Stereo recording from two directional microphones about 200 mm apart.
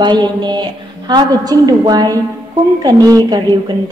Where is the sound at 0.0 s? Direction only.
20° right (ahead or behind).